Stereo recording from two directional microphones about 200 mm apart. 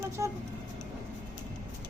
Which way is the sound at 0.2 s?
15° right (ahead or behind).